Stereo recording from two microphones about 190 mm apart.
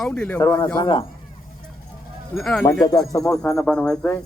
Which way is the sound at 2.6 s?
20° left (ahead or behind).